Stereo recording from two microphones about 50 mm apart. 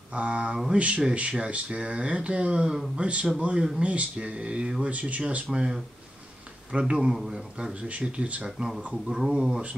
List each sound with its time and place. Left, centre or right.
0.1 s speech: right
7.9 s speech: right
8.5 s speech: centre